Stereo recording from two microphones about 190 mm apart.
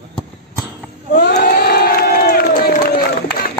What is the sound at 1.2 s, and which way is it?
Crowd, 55° left (ahead or behind).